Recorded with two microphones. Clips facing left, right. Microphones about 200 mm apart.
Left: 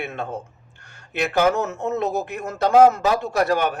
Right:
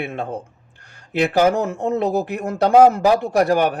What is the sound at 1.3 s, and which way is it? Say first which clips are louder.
A man's voice: right 1 dB; 35° right (ahead or behind).